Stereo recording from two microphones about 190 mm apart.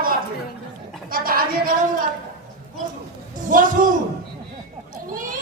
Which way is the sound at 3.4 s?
45° right (ahead or behind).